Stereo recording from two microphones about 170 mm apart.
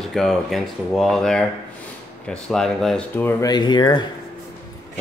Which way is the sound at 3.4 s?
25° left (ahead or behind).